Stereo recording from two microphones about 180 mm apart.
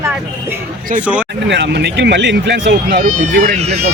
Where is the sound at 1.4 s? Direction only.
75° right (ahead or behind).